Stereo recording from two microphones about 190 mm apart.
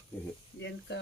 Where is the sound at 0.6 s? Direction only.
65° left (ahead or behind).